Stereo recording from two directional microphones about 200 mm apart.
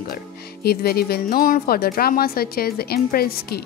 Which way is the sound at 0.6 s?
50° left (ahead or behind).